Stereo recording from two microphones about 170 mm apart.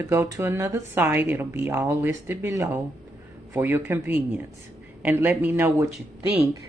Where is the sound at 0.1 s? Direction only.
15° right (ahead or behind).